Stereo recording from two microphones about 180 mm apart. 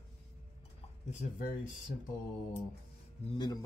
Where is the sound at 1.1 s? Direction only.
45° left (ahead or behind).